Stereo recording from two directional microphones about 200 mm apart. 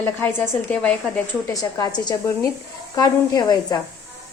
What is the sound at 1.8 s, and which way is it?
A woman's voice, 20° left (ahead or behind).